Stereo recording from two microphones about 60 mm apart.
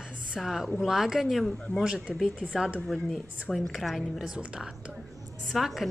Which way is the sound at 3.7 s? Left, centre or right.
Centre.